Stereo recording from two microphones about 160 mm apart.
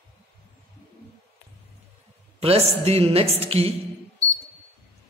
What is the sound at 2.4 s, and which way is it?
A woman's voice, 40° right (ahead or behind).